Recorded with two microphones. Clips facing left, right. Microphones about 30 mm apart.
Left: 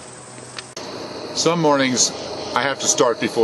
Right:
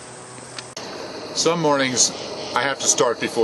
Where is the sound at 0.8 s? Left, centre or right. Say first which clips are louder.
Left 2 dB; centre.